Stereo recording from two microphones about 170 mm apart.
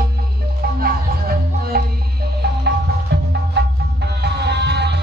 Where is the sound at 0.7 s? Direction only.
65° right (ahead or behind).